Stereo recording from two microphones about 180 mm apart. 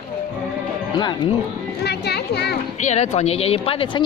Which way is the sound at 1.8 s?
65° left (ahead or behind).